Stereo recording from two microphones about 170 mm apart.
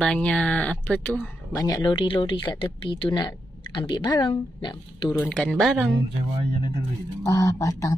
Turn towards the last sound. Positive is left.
turn(degrees=20)  # may be behind; listen again after turning